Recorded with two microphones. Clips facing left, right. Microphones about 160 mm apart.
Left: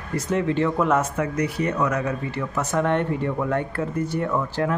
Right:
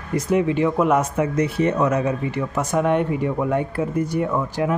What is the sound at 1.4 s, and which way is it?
Speech, 25° right (ahead or behind).